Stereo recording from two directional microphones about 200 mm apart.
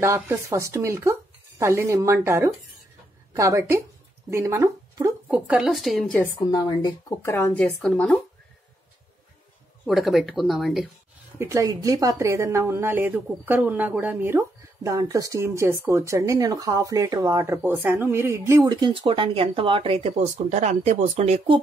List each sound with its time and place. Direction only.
0.0 s speech: 15° right (ahead or behind)
4.3 s a sound: 15° right (ahead or behind)
5.5 s speech: centre (ahead or behind)
6.5 s speech: 20° left (ahead or behind); by 8.2 s 5° left (ahead or behind)
9.8 s speech: centre (ahead or behind)
11.3 s a woman's voice: 15° right (ahead or behind); by 21.5 s 30° right (ahead or behind)